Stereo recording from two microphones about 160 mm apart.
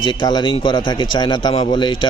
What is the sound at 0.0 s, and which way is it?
A man's voice, 30° left (ahead or behind).